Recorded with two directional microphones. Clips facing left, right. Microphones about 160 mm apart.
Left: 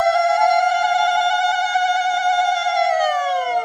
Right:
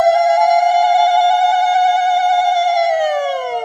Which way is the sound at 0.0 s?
25° right (ahead or behind).